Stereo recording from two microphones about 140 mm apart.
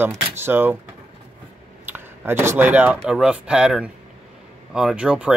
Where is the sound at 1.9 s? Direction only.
15° right (ahead or behind).